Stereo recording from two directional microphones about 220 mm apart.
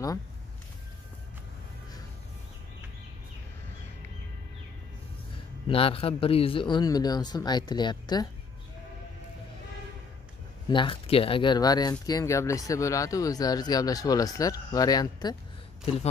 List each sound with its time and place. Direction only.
5.7 s speech: 25° left (ahead or behind)
10.7 s speech: 25° left (ahead or behind)